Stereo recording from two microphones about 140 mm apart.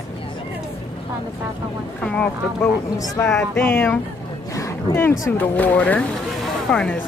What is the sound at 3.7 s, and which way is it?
Speech, 15° left (ahead or behind).